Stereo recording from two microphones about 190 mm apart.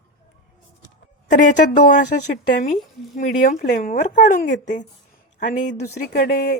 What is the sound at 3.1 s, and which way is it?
A woman's voice, 45° left (ahead or behind).